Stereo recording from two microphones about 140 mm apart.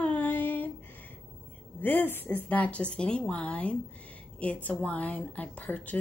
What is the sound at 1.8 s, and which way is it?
A woman's voice, 15° left (ahead or behind).